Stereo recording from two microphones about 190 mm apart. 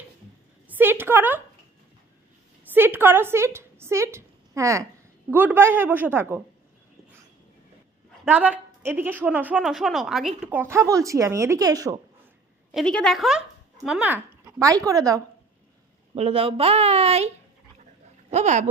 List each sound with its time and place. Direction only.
0.7 s a woman's voice: 10° right (ahead or behind)
2.7 s a woman's voice: 10° right (ahead or behind)
8.3 s a woman's voice: 10° right (ahead or behind)
12.7 s a woman's voice: 5° left (ahead or behind); by 15.2 s 15° right (ahead or behind)
16.2 s speech: 30° right (ahead or behind)
18.3 s speech: 40° right (ahead or behind)